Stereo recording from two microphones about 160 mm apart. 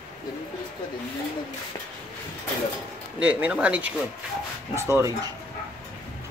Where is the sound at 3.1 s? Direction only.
5° right (ahead or behind).